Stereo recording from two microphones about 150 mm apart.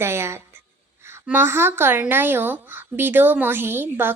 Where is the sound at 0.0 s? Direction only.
15° right (ahead or behind).